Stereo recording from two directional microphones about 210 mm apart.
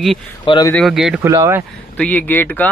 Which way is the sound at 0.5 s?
15° left (ahead or behind).